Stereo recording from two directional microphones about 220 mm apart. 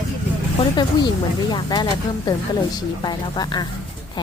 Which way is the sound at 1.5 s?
20° left (ahead or behind).